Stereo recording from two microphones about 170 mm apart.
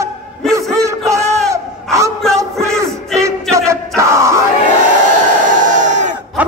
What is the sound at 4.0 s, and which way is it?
Crowd, 20° right (ahead or behind).